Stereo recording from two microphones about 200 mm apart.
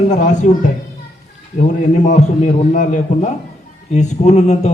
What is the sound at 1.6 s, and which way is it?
A man's voice, 35° left (ahead or behind).